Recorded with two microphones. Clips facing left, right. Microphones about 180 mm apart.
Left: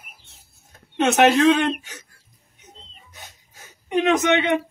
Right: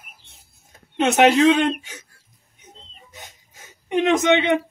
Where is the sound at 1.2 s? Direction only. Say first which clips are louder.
Right 1 dB; 15° right (ahead or behind).